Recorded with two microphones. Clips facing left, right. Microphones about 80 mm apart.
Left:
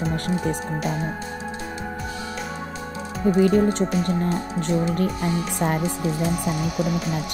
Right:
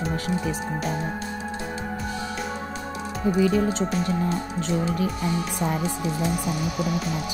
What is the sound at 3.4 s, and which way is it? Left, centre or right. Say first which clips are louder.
Speech: left 4 dB; left.